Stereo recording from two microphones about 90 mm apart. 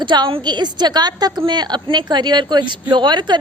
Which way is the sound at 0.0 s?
60° right (ahead or behind).